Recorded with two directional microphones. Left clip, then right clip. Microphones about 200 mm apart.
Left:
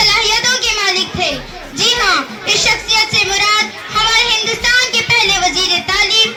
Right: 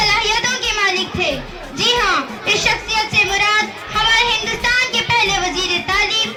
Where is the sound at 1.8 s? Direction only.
40° left (ahead or behind).